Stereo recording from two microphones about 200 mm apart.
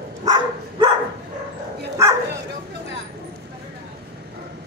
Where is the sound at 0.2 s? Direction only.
20° right (ahead or behind).